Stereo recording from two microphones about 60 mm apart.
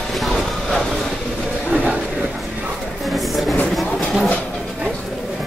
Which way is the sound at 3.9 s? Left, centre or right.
Centre.